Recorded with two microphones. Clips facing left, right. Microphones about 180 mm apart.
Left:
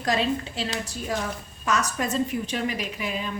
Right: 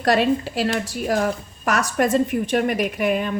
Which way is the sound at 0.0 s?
70° right (ahead or behind).